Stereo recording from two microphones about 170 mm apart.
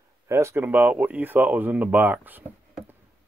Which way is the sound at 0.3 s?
15° right (ahead or behind).